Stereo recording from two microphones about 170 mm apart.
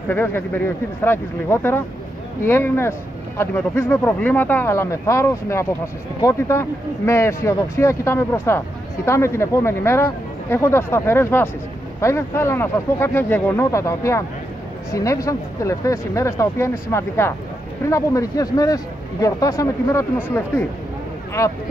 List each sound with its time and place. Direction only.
0.1 s speech: 10° left (ahead or behind)